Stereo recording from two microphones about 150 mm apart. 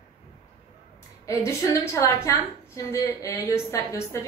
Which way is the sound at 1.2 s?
20° left (ahead or behind).